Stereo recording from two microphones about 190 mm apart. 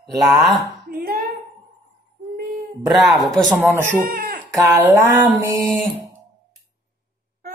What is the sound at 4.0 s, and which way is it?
Chicken, 55° right (ahead or behind).